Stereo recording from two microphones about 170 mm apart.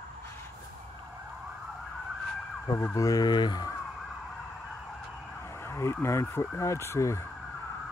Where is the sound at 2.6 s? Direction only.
15° left (ahead or behind).